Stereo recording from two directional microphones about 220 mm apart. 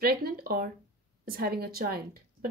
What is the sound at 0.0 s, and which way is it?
A woman's voice, 40° right (ahead or behind).